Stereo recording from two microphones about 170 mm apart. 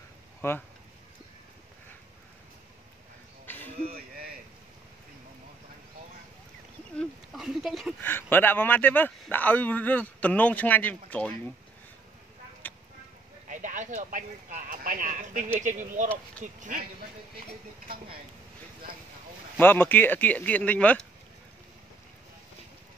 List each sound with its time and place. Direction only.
0.4 s speech: 15° left (ahead or behind)
3.4 s a sound: 10° left (ahead or behind)
7.0 s speech: centre (ahead or behind)
8.0 s speech: 10° left (ahead or behind)
12.6 s a sound: 10° left (ahead or behind)
13.5 s speech: 45° right (ahead or behind)
19.5 s speech: 10° left (ahead or behind)